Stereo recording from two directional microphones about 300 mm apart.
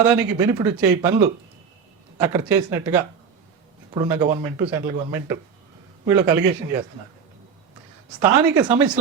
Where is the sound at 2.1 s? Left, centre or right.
Centre.